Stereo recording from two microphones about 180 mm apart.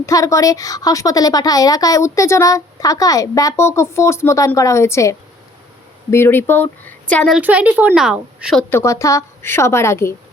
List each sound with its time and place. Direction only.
0.0 s a woman's voice: 15° left (ahead or behind)
7.3 s a woman's voice: 10° right (ahead or behind)
8.7 s a woman's voice: 15° left (ahead or behind)